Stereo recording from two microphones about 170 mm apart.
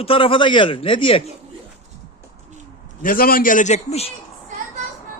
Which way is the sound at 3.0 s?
55° left (ahead or behind).